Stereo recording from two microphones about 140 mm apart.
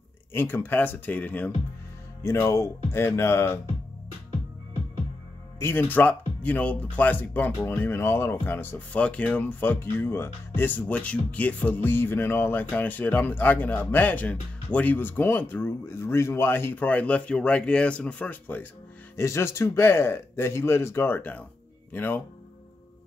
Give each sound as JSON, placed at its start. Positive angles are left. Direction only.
{"t": 0.3, "sound": "speech", "side_deg": 15}
{"t": 5.6, "sound": "speech", "side_deg": 15}